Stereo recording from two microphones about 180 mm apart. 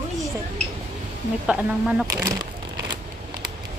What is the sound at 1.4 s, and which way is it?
Speech, 5° right (ahead or behind).